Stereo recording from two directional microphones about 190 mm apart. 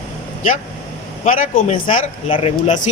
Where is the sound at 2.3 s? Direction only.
30° left (ahead or behind).